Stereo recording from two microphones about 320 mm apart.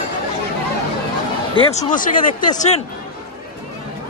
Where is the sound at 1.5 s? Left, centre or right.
Left.